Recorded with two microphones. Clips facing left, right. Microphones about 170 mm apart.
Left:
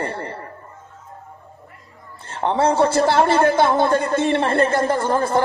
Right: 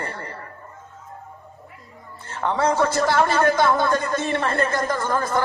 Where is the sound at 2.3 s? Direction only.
25° left (ahead or behind).